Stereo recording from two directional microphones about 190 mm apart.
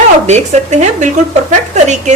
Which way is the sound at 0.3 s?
35° right (ahead or behind).